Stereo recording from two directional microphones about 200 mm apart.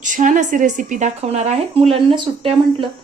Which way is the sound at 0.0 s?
40° right (ahead or behind).